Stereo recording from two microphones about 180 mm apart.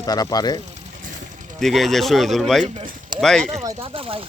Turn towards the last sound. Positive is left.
turn(degrees=-30)  # may be behind; listen again after turning